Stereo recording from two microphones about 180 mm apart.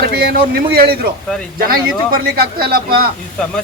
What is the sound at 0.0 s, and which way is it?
A man's voice, 60° right (ahead or behind).